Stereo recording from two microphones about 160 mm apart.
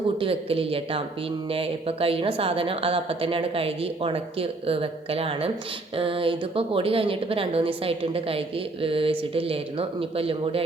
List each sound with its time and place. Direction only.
0.2 s a woman's voice: 35° right (ahead or behind)